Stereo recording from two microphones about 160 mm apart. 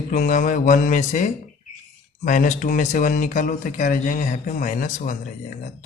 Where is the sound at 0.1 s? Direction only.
55° left (ahead or behind).